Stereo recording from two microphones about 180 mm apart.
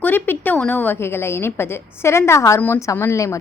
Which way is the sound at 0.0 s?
10° left (ahead or behind).